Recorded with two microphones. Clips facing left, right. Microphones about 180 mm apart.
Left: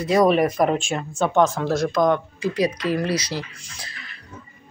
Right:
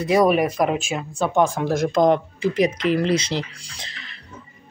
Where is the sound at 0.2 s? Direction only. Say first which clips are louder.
Left 3 dB; 5° right (ahead or behind).